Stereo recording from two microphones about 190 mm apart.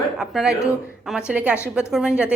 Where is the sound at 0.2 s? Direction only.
5° right (ahead or behind).